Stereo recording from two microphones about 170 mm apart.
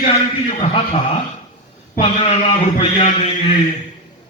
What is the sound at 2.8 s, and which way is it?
Speech, 35° left (ahead or behind).